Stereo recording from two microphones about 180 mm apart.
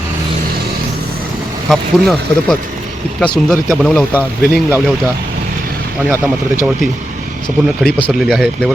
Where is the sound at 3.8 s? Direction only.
5° left (ahead or behind).